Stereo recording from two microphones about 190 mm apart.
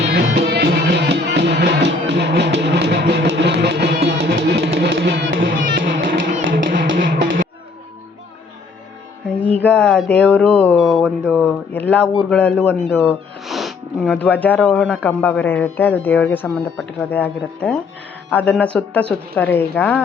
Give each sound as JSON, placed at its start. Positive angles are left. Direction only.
{"t": 0.0, "sound": "music", "side_deg": -65}
{"t": 5.7, "sound": "music", "side_deg": -75}
{"t": 6.1, "sound": "music", "side_deg": -45}
{"t": 9.3, "sound": "music", "side_deg": 5}
{"t": 10.1, "sound": "speech", "side_deg": 5}
{"t": 13.4, "sound": "sniff", "side_deg": 0}
{"t": 14.3, "sound": "speech", "side_deg": 10}